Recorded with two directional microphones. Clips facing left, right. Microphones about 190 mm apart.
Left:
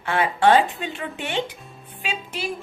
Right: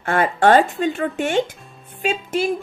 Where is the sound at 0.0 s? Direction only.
45° right (ahead or behind).